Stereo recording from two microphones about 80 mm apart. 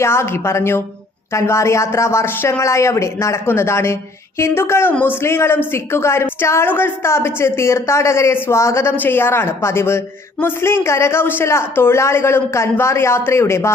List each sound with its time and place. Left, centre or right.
0.0 s speech: left